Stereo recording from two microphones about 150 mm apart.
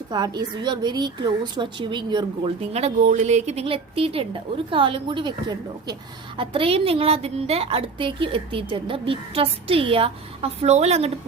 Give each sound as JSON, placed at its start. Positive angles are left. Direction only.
{"t": 0.1, "sound": "a woman's voice", "side_deg": -30}